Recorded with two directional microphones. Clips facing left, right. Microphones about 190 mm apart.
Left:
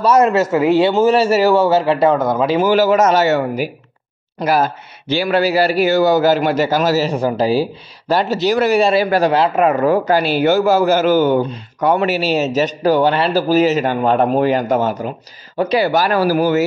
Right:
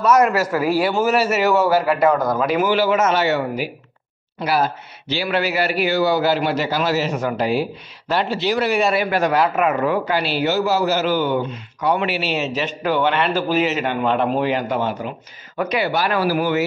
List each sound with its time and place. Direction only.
0.0 s a man's voice: 25° left (ahead or behind)
2.7 s a man's voice: 40° left (ahead or behind)